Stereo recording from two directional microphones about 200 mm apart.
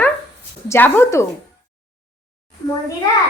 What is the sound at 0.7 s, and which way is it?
Speech, 10° left (ahead or behind).